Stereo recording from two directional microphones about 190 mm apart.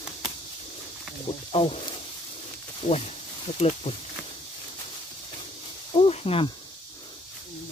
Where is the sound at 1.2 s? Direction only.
30° left (ahead or behind).